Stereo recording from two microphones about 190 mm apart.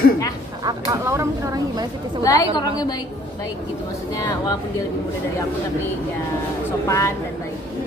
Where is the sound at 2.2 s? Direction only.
20° left (ahead or behind).